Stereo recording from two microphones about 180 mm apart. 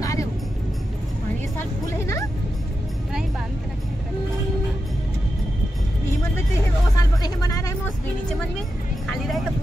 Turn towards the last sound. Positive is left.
turn(degrees=20)  # may be behind; listen again after turning